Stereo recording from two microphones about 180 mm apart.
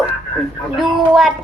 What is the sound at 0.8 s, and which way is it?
Speech, centre (ahead or behind).